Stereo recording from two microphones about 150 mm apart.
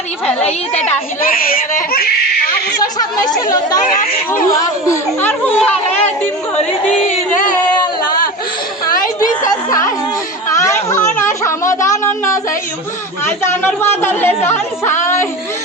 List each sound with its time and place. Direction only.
0.4 s a woman's voice: 45° left (ahead or behind)
1.2 s speech: 70° left (ahead or behind)
2.8 s speech: 25° left (ahead or behind)
3.8 s speech: 55° left (ahead or behind)
4.6 s speech: 20° left (ahead or behind)
5.5 s speech: 10° left (ahead or behind)
9.2 s a sound: 25° left (ahead or behind)
13.4 s speech: 15° left (ahead or behind)
15.0 s music: 20° left (ahead or behind)